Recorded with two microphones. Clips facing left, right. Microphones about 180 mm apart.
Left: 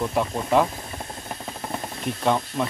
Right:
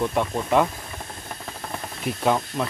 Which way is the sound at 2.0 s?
5° right (ahead or behind).